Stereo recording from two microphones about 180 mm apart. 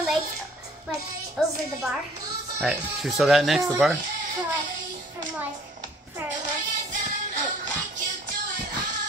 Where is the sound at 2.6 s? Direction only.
5° right (ahead or behind).